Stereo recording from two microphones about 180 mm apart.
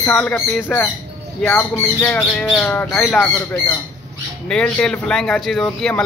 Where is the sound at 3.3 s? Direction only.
15° left (ahead or behind).